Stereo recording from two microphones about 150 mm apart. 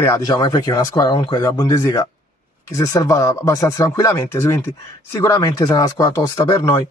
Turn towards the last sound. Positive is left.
turn(degrees=25)  # may be behind; listen again after turning